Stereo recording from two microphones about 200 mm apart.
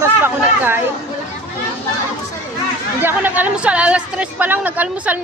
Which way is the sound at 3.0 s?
10° right (ahead or behind).